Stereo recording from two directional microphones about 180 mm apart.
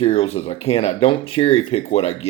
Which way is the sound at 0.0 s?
35° left (ahead or behind).